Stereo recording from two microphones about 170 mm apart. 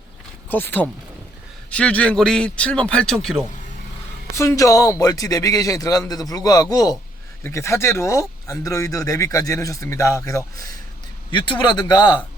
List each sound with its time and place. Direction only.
0.5 s speech: 10° left (ahead or behind)
4.4 s speech: 20° left (ahead or behind)